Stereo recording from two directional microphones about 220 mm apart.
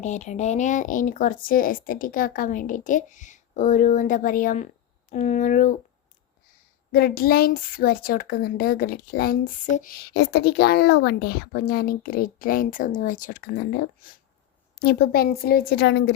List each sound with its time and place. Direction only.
0.0 s speech: 30° left (ahead or behind)
6.9 s speech: 45° left (ahead or behind)